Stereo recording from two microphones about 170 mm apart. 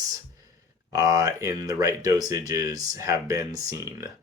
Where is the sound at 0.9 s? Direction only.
20° right (ahead or behind).